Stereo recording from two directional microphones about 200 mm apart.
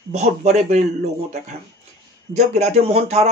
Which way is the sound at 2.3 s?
35° right (ahead or behind).